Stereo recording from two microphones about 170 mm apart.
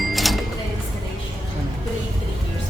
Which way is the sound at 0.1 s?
Centre (ahead or behind).